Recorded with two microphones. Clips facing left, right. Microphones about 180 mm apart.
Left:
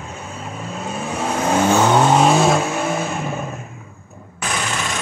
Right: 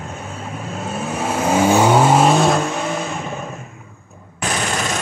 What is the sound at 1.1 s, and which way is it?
Vehicle, 5° right (ahead or behind).